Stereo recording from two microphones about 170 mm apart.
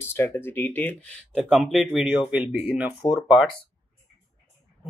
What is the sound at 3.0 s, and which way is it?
Speech, 25° left (ahead or behind).